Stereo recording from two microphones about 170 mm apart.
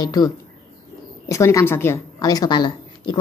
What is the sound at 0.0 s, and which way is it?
Speech, 25° left (ahead or behind).